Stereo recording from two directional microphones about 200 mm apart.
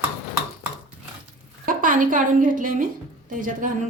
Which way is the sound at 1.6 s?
45° right (ahead or behind).